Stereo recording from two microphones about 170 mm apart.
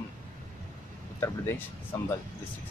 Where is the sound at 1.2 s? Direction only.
15° left (ahead or behind).